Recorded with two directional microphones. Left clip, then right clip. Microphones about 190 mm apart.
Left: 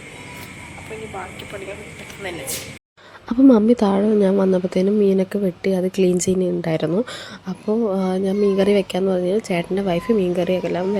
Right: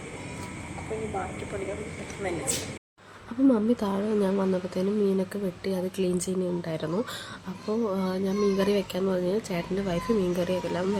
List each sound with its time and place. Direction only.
3.2 s speech: 35° left (ahead or behind)